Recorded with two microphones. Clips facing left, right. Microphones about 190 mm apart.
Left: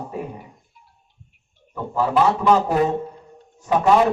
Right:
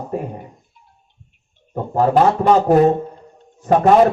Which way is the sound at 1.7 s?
45° right (ahead or behind).